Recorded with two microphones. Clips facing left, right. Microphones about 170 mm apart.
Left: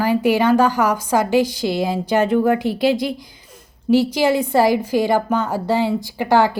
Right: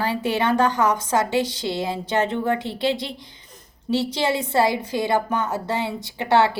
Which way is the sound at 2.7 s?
25° right (ahead or behind).